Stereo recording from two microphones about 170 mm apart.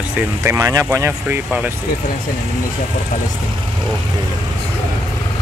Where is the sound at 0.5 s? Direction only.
20° right (ahead or behind).